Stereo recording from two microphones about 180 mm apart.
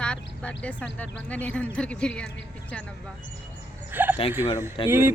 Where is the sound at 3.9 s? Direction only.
10° right (ahead or behind).